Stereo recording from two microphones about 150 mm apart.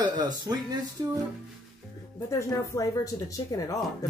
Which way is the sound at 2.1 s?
20° left (ahead or behind).